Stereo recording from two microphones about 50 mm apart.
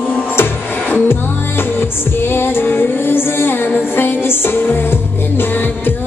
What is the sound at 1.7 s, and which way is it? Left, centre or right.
Music, left.